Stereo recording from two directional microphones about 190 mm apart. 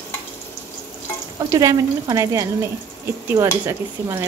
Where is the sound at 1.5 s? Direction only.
15° right (ahead or behind).